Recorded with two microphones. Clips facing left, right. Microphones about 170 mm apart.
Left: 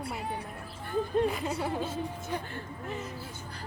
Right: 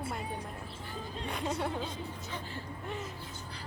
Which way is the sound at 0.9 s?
55° left (ahead or behind).